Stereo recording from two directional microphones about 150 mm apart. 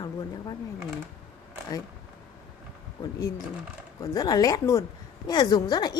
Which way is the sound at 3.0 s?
25° left (ahead or behind).